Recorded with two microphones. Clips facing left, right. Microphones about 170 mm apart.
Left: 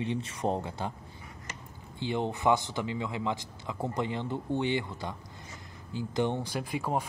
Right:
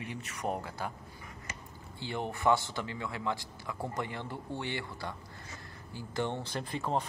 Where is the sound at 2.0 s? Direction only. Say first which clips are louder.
Left 4 dB; 20° left (ahead or behind).